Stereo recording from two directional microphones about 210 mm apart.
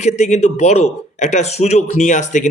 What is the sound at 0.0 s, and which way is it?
Speech, 35° left (ahead or behind).